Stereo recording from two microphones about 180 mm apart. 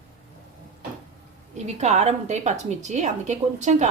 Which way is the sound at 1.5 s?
40° right (ahead or behind).